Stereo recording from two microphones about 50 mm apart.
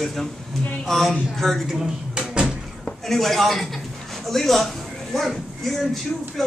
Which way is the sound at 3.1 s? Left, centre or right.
Centre.